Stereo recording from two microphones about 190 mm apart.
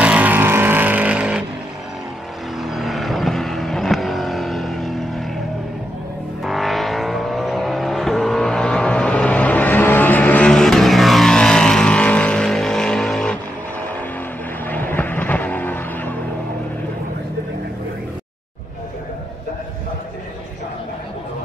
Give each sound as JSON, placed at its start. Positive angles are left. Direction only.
{"t": 0.0, "sound": "vehicle", "side_deg": -5}
{"t": 2.6, "sound": "vehicle", "side_deg": 0}
{"t": 6.4, "sound": "vehicle", "side_deg": 0}
{"t": 14.7, "sound": "vehicle", "side_deg": 10}